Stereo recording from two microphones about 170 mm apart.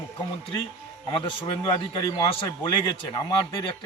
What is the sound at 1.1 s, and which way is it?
A man's voice, 30° left (ahead or behind).